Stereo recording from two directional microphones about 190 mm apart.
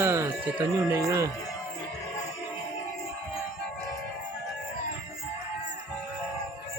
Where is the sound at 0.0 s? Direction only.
15° right (ahead or behind).